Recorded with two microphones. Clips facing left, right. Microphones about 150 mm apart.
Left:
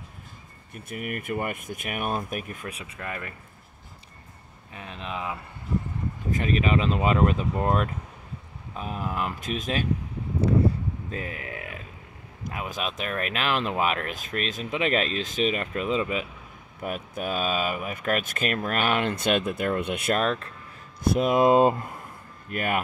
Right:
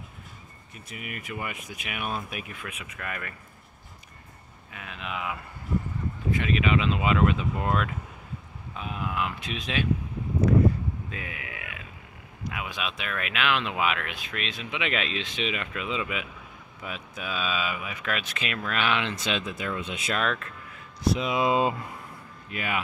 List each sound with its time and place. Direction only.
0.7 s speech: 50° left (ahead or behind); by 3.3 s 25° left (ahead or behind)
4.7 s speech: 35° left (ahead or behind)
11.1 s a sound: 40° left (ahead or behind)
12.4 s speech: 40° left (ahead or behind)
16.8 s speech: 50° left (ahead or behind)
20.2 s speech: 35° left (ahead or behind)
21.0 s speech: 50° left (ahead or behind)